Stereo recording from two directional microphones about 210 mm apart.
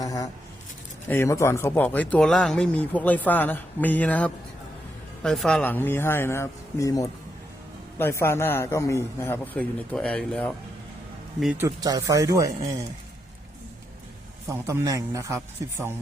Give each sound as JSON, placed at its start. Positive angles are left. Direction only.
{"t": 0.0, "sound": "speech", "side_deg": 15}
{"t": 11.5, "sound": "speech", "side_deg": -15}
{"t": 14.4, "sound": "speech", "side_deg": -15}